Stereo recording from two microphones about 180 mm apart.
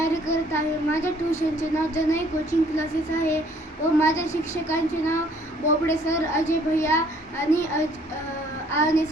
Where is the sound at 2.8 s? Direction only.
15° left (ahead or behind).